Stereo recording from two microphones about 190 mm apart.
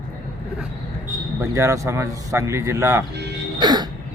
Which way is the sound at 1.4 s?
15° right (ahead or behind).